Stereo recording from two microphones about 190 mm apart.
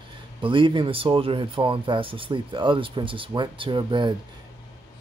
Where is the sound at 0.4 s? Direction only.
25° right (ahead or behind).